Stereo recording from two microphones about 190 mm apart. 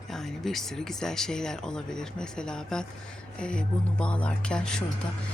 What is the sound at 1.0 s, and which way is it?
Speech, 5° left (ahead or behind).